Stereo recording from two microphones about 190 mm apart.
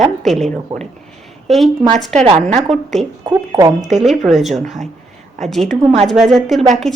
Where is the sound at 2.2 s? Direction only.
30° right (ahead or behind).